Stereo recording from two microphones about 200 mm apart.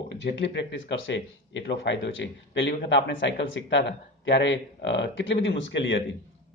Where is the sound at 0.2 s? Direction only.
60° left (ahead or behind).